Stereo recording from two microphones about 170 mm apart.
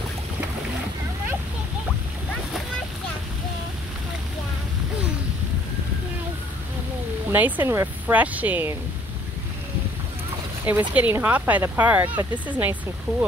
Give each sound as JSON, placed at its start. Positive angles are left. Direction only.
{"t": 7.2, "sound": "speech", "side_deg": -10}
{"t": 10.6, "sound": "speech", "side_deg": -10}